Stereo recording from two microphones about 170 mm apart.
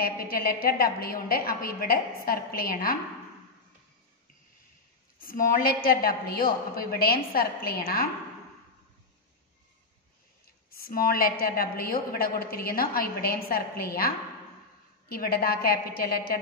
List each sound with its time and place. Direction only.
0.0 s a woman's voice: 60° left (ahead or behind)
5.2 s a woman's voice: 55° left (ahead or behind)
10.7 s a woman's voice: 60° left (ahead or behind)